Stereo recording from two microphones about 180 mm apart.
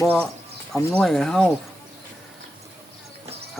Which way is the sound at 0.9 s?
5° left (ahead or behind).